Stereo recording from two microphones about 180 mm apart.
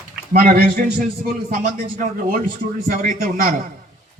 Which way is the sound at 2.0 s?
50° right (ahead or behind).